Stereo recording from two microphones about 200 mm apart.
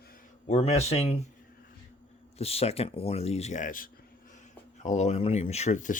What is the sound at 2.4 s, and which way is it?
Speech, 30° left (ahead or behind).